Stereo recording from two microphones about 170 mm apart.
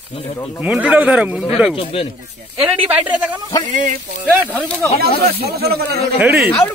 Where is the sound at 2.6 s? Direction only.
10° right (ahead or behind).